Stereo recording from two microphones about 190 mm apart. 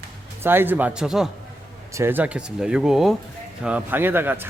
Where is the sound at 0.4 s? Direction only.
10° right (ahead or behind).